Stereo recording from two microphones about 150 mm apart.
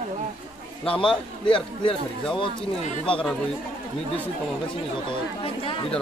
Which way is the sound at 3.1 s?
5° left (ahead or behind).